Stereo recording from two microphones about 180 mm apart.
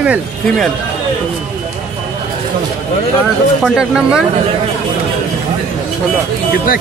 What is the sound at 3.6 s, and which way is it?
Speech, 5° right (ahead or behind).